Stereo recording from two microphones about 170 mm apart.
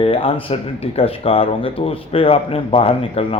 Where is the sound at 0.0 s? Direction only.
30° left (ahead or behind).